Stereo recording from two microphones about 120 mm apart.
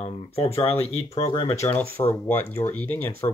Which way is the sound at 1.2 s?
40° left (ahead or behind).